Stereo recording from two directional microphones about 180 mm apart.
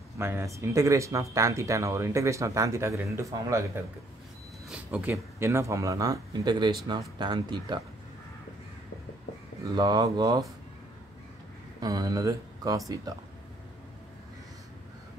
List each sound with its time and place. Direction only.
0.2 s speech: 15° right (ahead or behind)
9.8 s speech: 25° right (ahead or behind)
11.8 s speech: 20° right (ahead or behind)